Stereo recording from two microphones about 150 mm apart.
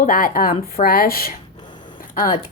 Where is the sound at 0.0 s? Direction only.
65° left (ahead or behind); by 1.3 s 85° left.